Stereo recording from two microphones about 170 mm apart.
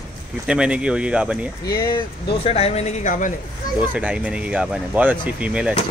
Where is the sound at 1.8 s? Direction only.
25° left (ahead or behind); by 3.3 s 50° left (ahead or behind).